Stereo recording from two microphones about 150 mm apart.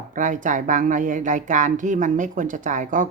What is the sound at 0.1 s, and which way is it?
Speech, 60° right (ahead or behind).